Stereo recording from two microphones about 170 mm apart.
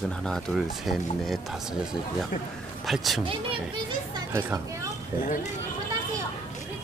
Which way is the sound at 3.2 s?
30° right (ahead or behind).